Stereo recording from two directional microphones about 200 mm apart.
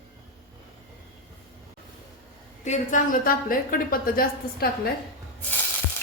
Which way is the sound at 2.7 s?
40° left (ahead or behind).